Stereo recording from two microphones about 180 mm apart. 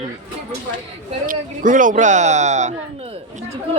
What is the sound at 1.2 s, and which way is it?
Speech, 50° right (ahead or behind).